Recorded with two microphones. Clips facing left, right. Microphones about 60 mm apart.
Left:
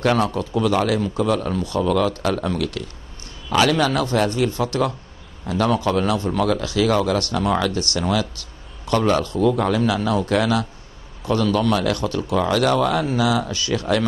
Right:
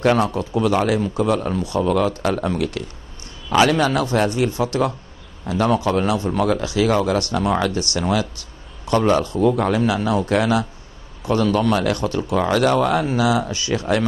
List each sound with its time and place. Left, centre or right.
0.0 s speech: centre